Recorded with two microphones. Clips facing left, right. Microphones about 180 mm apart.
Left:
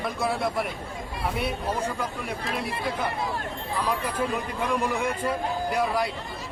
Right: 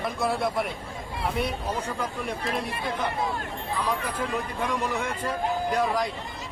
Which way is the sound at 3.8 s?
10° left (ahead or behind).